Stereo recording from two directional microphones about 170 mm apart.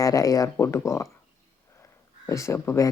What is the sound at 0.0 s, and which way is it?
Speech, 20° left (ahead or behind).